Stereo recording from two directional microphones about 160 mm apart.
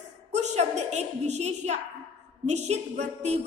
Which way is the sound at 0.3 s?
45° right (ahead or behind).